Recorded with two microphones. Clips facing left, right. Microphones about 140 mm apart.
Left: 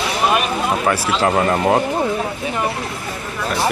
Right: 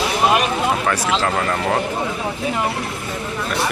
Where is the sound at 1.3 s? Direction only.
25° left (ahead or behind).